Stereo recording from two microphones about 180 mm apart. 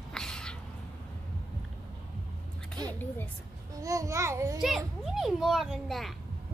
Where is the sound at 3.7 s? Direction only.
20° right (ahead or behind).